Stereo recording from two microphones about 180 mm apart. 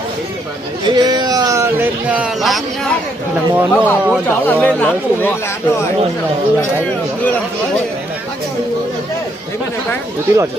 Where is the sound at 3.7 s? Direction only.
10° left (ahead or behind).